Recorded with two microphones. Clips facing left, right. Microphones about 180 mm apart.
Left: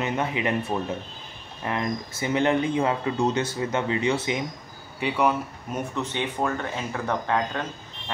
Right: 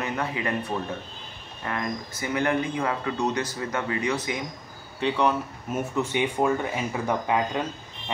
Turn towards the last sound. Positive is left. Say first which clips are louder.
# right 1 dB
turn(degrees=-10)  # may be behind; listen again after turning